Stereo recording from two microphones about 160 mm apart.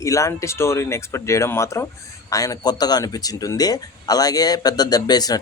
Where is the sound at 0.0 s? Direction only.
20° left (ahead or behind).